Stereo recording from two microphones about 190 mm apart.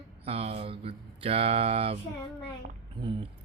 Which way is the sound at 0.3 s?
30° right (ahead or behind).